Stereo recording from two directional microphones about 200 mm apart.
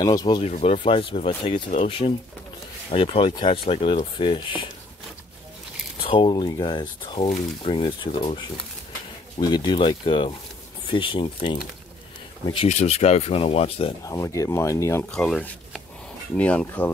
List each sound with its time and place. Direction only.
0.0 s speech: 20° left (ahead or behind)
0.4 s speech: 30° left (ahead or behind)
6.0 s speech: 25° left (ahead or behind)
14.0 s speech: 15° left (ahead or behind)